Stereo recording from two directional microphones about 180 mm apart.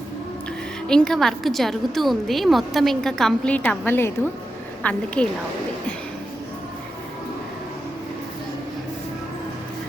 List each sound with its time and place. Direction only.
0.9 s a woman's voice: 5° left (ahead or behind)